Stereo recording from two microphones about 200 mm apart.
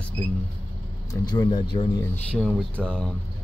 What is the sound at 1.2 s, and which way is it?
Speech, 20° left (ahead or behind).